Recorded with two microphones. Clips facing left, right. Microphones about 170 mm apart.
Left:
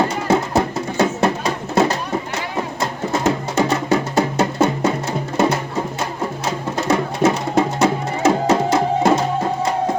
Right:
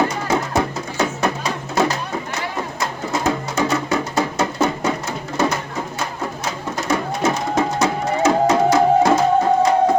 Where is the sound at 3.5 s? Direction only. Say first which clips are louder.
Left 2 dB; 30° left (ahead or behind).